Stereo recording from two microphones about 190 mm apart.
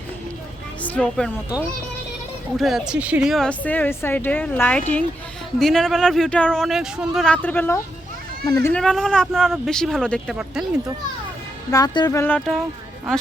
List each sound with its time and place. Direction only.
0.8 s speech: 5° left (ahead or behind)
2.6 s speech: centre (ahead or behind); by 8.7 s 15° left (ahead or behind)
8.7 s speech: centre (ahead or behind)
11.7 s speech: 20° left (ahead or behind)